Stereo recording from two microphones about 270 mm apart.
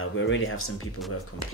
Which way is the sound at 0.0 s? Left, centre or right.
Left.